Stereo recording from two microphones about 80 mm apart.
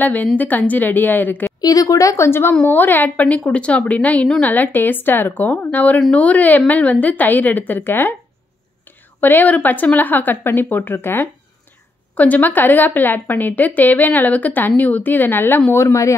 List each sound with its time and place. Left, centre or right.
0.0 s a woman's voice: left
1.6 s a woman's voice: left
2.5 s a woman's voice: centre
9.2 s a woman's voice: left
15.7 s speech: left